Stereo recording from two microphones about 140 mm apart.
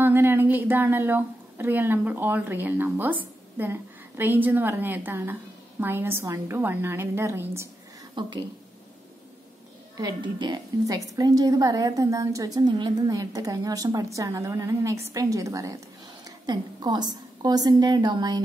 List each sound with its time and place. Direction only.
0.0 s a woman's voice: 15° right (ahead or behind)
8.1 s a woman's voice: 30° right (ahead or behind)
9.9 s a woman's voice: 30° right (ahead or behind)